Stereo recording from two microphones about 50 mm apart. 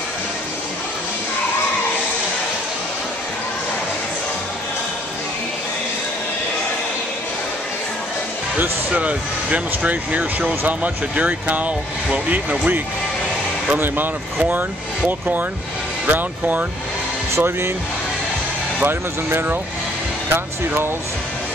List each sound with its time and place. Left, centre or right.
8.5 s speech: right
15.0 s speech: right
17.4 s speech: right
18.9 s speech: right